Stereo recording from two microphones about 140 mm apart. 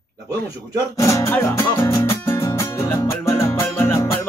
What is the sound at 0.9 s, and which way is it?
Music, 20° left (ahead or behind).